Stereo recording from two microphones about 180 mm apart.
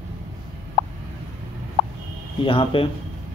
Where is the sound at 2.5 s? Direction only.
30° left (ahead or behind).